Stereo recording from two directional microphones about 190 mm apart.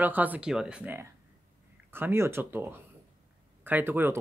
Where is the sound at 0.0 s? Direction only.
10° right (ahead or behind).